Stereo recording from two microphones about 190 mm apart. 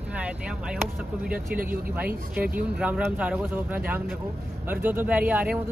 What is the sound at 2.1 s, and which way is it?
Speech, 50° right (ahead or behind).